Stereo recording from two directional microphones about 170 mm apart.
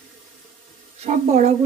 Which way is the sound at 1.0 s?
40° right (ahead or behind).